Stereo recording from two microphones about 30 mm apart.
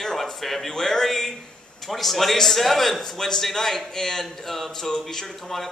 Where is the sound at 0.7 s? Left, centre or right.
Centre.